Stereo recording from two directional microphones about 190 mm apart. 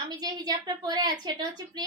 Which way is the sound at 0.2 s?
20° right (ahead or behind).